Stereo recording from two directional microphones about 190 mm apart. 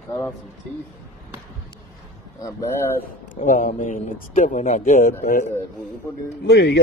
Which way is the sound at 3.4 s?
45° left (ahead or behind).